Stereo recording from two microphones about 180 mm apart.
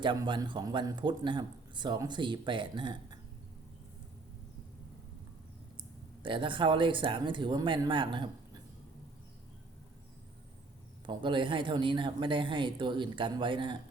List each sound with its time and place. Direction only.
0.0 s a man's voice: 25° right (ahead or behind)
6.2 s a man's voice: 30° right (ahead or behind)
11.0 s a man's voice: 25° right (ahead or behind)